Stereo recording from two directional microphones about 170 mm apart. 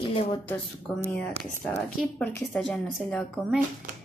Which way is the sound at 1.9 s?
5° left (ahead or behind).